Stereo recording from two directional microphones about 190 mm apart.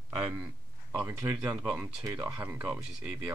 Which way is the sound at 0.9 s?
15° right (ahead or behind).